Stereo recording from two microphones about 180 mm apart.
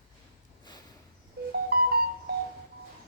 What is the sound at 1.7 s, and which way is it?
Music, 60° right (ahead or behind).